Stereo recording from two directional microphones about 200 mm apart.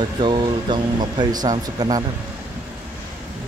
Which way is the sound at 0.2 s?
20° right (ahead or behind).